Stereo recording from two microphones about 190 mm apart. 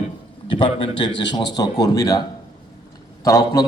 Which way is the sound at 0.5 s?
25° left (ahead or behind).